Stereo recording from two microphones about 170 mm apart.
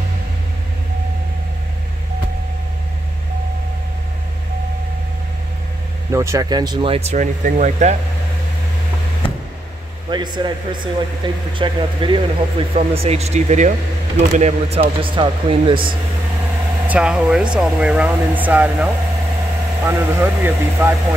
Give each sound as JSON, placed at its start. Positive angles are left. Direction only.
{"t": 6.1, "sound": "speech", "side_deg": -20}
{"t": 10.0, "sound": "a man's voice", "side_deg": -25}
{"t": 16.8, "sound": "speech", "side_deg": -5}